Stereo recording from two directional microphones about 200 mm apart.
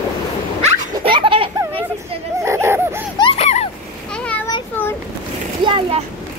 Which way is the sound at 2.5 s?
15° right (ahead or behind).